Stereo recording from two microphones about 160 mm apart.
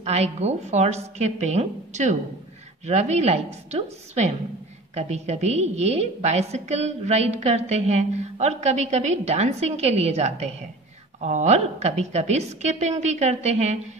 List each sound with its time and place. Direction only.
0.0 s a woman's voice: 40° right (ahead or behind)